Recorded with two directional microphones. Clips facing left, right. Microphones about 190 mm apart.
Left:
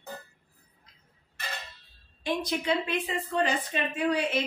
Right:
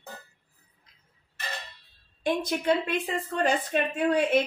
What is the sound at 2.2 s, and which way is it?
A woman's voice, 55° right (ahead or behind).